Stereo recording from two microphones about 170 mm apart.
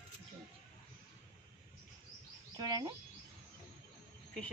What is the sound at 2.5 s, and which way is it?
Speech, 25° right (ahead or behind).